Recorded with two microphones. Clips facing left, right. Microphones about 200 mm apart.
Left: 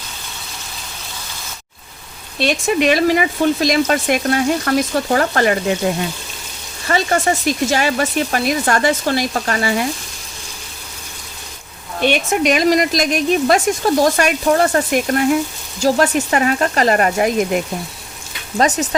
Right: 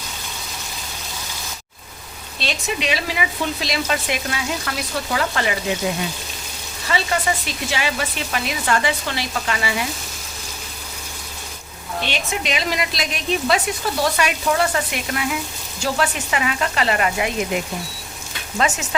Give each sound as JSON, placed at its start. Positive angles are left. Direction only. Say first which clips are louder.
{"t": 2.4, "sound": "speech", "louder": "left 9 dB", "side_deg": 55}
{"t": 12.0, "sound": "speech", "louder": "left 11 dB", "side_deg": 50}
{"t": 18.5, "sound": "frying", "louder": "left 6 dB", "side_deg": 35}